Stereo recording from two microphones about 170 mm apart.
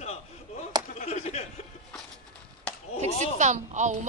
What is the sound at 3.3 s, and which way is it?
Speech, 45° right (ahead or behind).